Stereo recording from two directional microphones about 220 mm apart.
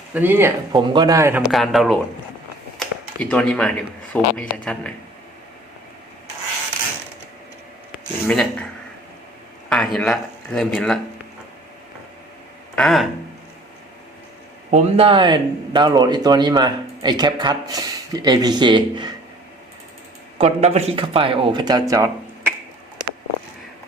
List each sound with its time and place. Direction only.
0.1 s a man's voice: 10° right (ahead or behind)
7.9 s speech: 5° left (ahead or behind)
9.6 s speech: 5° left (ahead or behind)
12.7 s speech: centre (ahead or behind)
14.7 s a man's voice: 30° right (ahead or behind)
20.4 s a man's voice: 30° right (ahead or behind)